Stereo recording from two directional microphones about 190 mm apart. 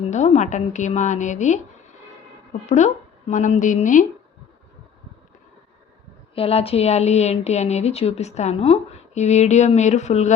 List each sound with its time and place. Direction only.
0.0 s a woman's voice: 40° left (ahead or behind)
6.3 s a woman's voice: 30° left (ahead or behind)